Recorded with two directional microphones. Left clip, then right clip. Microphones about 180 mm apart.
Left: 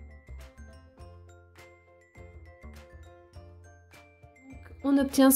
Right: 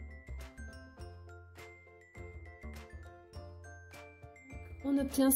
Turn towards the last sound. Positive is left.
turn(degrees=5)  # may be behind; listen again after turning